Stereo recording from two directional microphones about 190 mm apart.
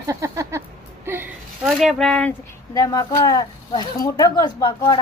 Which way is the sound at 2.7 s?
20° left (ahead or behind).